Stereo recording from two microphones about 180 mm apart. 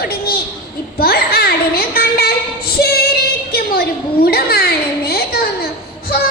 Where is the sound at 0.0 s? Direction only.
60° left (ahead or behind).